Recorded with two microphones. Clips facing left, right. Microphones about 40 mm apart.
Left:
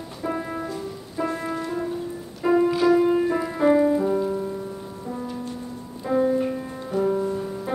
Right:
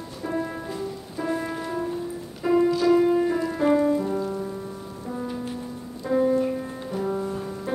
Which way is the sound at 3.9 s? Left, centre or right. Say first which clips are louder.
Left 4 dB; centre.